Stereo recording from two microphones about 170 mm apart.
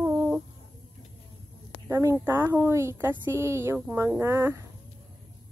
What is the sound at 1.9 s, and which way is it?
Speech, 15° right (ahead or behind).